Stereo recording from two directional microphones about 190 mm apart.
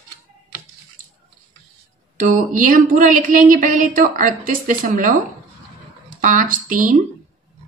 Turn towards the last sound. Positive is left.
turn(degrees=-45)  # may be behind; listen again after turning